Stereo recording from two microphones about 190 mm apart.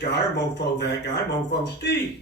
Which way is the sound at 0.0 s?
65° left (ahead or behind).